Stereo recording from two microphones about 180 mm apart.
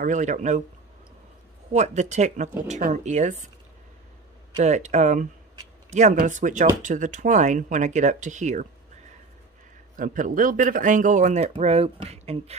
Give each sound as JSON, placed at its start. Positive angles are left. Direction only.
{"t": 0.0, "sound": "speech", "side_deg": -45}
{"t": 1.7, "sound": "speech", "side_deg": -40}
{"t": 4.6, "sound": "speech", "side_deg": -40}
{"t": 9.9, "sound": "speech", "side_deg": -50}